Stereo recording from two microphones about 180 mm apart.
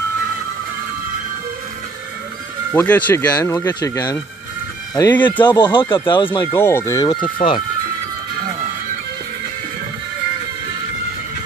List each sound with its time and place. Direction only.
2.7 s speech: 10° left (ahead or behind); by 6.4 s 25° left (ahead or behind)
6.5 s speech: 15° left (ahead or behind)
7.4 s speech: 40° left (ahead or behind)